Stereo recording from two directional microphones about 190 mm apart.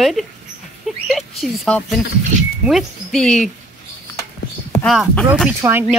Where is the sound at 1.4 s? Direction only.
5° left (ahead or behind).